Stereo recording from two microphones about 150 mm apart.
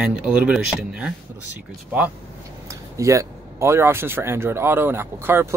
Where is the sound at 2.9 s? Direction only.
20° right (ahead or behind).